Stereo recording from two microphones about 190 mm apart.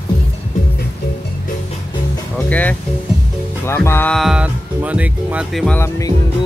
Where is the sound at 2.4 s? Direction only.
10° left (ahead or behind).